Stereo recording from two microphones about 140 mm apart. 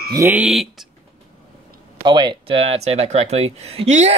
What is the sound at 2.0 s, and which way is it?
Speech, 35° right (ahead or behind).